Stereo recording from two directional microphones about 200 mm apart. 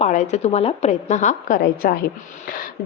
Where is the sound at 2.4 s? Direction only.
45° left (ahead or behind).